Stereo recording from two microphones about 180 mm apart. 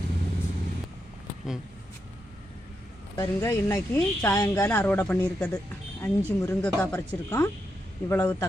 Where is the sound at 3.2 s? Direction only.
15° left (ahead or behind).